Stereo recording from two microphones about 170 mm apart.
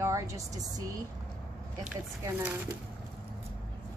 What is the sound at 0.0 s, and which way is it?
Speech, 20° right (ahead or behind).